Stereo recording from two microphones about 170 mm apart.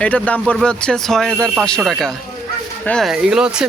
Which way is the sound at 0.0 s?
10° left (ahead or behind).